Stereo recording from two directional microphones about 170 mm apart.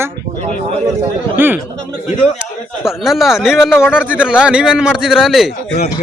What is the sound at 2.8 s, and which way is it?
A man's voice, centre (ahead or behind).